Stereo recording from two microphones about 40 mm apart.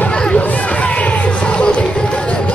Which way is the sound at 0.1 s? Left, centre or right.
Left.